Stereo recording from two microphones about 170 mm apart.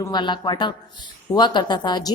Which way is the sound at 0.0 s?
25° left (ahead or behind).